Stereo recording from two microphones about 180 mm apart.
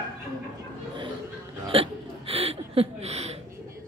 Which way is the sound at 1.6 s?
30° right (ahead or behind).